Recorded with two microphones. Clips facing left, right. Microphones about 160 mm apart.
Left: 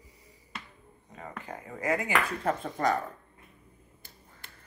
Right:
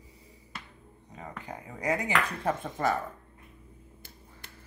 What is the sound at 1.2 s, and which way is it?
Speech, 15° right (ahead or behind).